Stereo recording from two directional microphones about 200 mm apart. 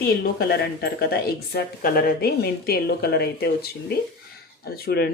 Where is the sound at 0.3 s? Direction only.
55° left (ahead or behind).